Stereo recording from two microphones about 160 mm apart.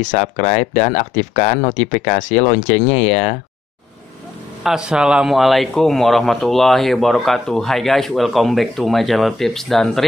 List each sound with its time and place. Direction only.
0.0 s speech: 50° left (ahead or behind)
4.6 s speech: 5° right (ahead or behind)